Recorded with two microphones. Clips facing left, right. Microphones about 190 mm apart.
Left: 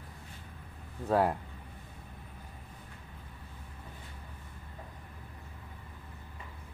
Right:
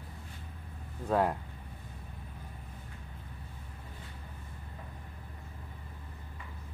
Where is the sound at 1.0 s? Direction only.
5° left (ahead or behind).